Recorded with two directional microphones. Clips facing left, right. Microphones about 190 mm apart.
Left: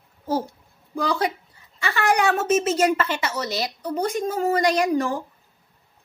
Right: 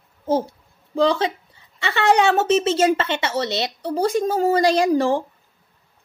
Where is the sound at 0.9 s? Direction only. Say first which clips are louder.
Right 5 dB; 25° right (ahead or behind).